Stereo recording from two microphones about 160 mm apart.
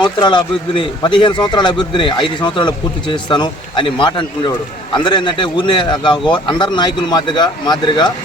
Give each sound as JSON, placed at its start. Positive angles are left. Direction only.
{"t": 0.0, "sound": "speech", "side_deg": 30}